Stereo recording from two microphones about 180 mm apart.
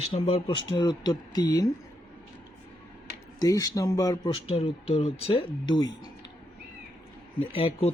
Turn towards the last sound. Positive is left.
turn(degrees=30)  # may be behind; listen again after turning